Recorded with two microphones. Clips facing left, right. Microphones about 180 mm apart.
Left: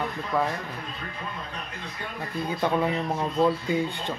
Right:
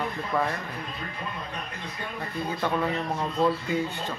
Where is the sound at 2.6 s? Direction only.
15° left (ahead or behind).